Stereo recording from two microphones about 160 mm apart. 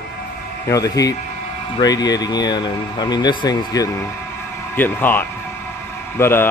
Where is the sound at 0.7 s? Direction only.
20° left (ahead or behind).